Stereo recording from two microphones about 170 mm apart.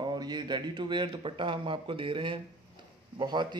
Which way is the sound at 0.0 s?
25° right (ahead or behind).